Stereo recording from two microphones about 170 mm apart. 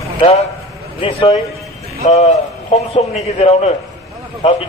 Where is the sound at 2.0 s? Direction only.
40° left (ahead or behind).